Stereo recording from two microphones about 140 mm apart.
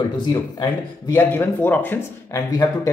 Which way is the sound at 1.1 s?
15° left (ahead or behind).